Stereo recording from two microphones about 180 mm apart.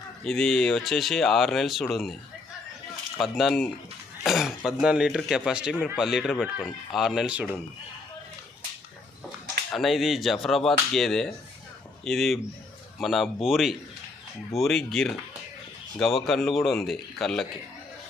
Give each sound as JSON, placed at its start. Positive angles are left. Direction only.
{"t": 0.3, "sound": "speech", "side_deg": 5}
{"t": 3.2, "sound": "speech", "side_deg": 0}
{"t": 9.7, "sound": "speech", "side_deg": 0}